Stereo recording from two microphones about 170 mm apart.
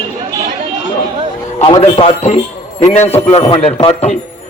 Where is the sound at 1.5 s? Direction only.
30° left (ahead or behind).